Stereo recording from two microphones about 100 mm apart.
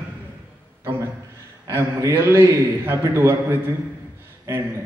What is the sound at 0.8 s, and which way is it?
A man's voice, 25° right (ahead or behind).